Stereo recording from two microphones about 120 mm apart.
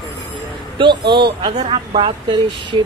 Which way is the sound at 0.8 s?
40° right (ahead or behind).